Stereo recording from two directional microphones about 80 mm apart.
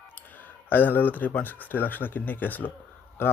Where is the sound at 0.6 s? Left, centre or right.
Left.